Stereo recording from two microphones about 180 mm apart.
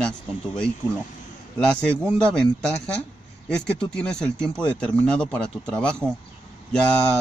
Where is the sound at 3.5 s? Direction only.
5° left (ahead or behind).